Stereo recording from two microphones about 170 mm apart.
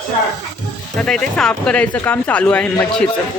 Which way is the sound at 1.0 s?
5° left (ahead or behind).